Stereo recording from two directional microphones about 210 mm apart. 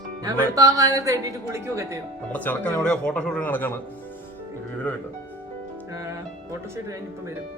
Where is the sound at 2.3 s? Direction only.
5° left (ahead or behind).